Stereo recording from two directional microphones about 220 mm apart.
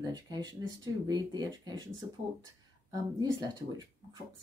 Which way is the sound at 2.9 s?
15° right (ahead or behind).